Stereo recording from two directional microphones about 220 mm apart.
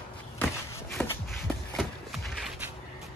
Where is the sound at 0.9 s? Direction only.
Centre (ahead or behind).